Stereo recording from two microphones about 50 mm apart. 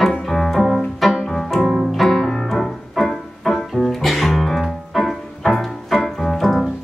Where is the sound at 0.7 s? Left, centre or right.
Centre.